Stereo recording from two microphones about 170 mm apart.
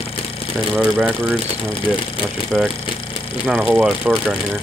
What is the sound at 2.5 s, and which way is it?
Speech, 5° left (ahead or behind).